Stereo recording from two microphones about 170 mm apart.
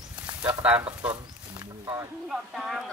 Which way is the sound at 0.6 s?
5° right (ahead or behind).